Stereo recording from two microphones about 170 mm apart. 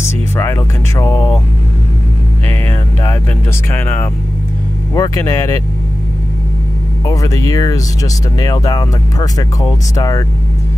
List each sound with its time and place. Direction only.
0.4 s speech: 15° left (ahead or behind)
3.7 s speech: 10° left (ahead or behind)
7.1 s speech: 20° left (ahead or behind)